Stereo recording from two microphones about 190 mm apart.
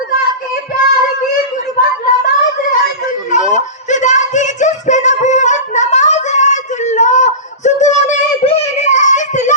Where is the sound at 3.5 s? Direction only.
40° left (ahead or behind).